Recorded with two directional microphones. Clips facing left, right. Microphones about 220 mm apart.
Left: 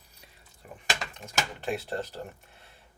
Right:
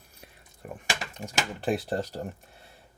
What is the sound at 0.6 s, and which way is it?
Speech, 50° right (ahead or behind).